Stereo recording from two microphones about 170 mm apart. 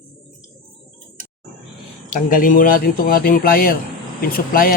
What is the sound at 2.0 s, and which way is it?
Speech, 50° left (ahead or behind).